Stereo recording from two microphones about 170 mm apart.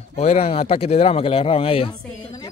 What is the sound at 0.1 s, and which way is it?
Speech, 40° left (ahead or behind).